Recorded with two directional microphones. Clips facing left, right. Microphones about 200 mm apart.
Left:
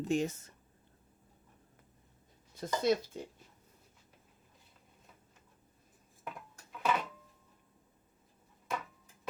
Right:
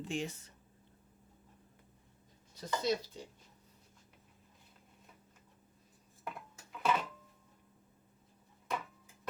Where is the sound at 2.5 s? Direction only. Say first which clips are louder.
Left 4 dB; 50° left (ahead or behind).